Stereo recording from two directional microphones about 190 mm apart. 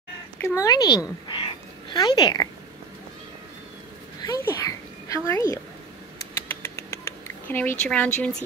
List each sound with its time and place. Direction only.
0.4 s speech: 20° left (ahead or behind)
1.2 s a sound: 25° left (ahead or behind)
4.2 s a child's voice: 20° left (ahead or behind)
6.5 s rodents: 15° left (ahead or behind)
7.8 s a woman's voice: 5° left (ahead or behind)